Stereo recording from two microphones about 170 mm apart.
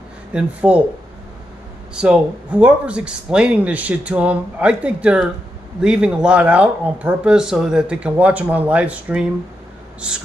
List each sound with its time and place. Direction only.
0.3 s speech: 5° right (ahead or behind)
2.0 s speech: 5° right (ahead or behind)